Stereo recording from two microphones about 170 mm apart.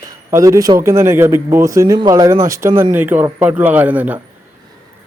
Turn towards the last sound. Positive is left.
turn(degrees=-10)  # may be behind; listen again after turning